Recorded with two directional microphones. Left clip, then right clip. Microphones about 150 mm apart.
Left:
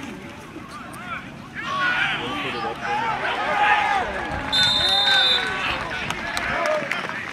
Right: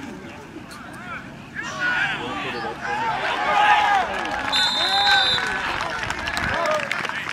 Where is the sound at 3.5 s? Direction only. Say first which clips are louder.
Right 3 dB; 30° right (ahead or behind).